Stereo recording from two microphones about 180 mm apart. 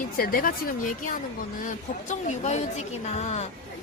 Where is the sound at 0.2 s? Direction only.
55° left (ahead or behind).